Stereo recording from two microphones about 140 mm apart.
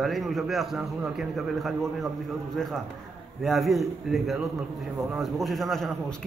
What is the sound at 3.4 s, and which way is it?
A man's voice, centre (ahead or behind).